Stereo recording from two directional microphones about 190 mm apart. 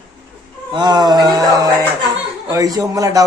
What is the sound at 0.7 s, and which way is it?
Speech, 20° right (ahead or behind).